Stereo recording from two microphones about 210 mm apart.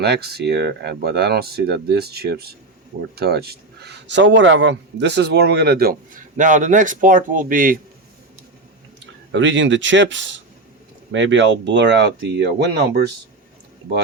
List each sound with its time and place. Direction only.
0.0 s a man's voice: 50° right (ahead or behind)
9.0 s speech: 60° right (ahead or behind)